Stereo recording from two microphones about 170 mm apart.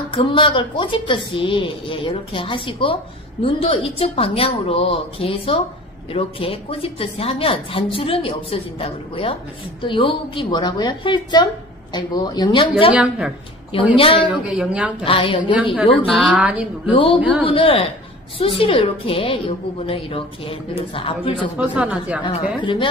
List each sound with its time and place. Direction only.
0.1 s a woman's voice: 30° left (ahead or behind)
12.9 s speech: 5° right (ahead or behind)
13.9 s a woman's voice: 30° left (ahead or behind)
14.3 s speech: 5° right (ahead or behind)
15.0 s a woman's voice: 30° left (ahead or behind)
16.1 s speech: 5° right (ahead or behind)
16.9 s a woman's voice: 30° left (ahead or behind)
21.5 s speech: 5° right (ahead or behind)
22.6 s a woman's voice: 30° left (ahead or behind)